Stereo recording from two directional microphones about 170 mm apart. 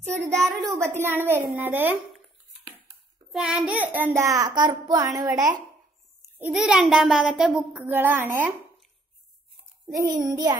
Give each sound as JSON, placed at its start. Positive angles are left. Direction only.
{"t": 0.3, "sound": "a child's voice", "side_deg": 0}
{"t": 0.7, "sound": "a woman's voice", "side_deg": -15}
{"t": 3.3, "sound": "a woman's voice", "side_deg": -5}
{"t": 4.4, "sound": "a child's voice", "side_deg": -25}
{"t": 6.2, "sound": "babbling", "side_deg": -15}
{"t": 6.5, "sound": "a child's voice", "side_deg": -5}
{"t": 9.8, "sound": "a child's voice", "side_deg": -20}